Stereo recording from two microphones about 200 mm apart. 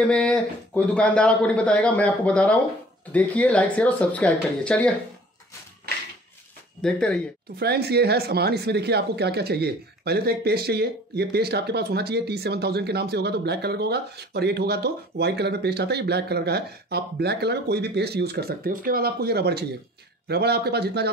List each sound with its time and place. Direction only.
0.0 s a man's voice: 5° left (ahead or behind)
6.8 s a man's voice: 5° left (ahead or behind)
7.5 s speech: 55° right (ahead or behind)